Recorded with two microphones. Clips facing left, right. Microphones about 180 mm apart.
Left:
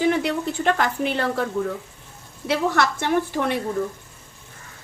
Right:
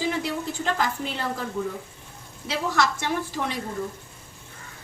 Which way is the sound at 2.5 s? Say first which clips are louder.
Left 4 dB; 60° left (ahead or behind).